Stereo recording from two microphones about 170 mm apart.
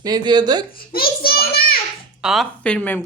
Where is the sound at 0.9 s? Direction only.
60° left (ahead or behind).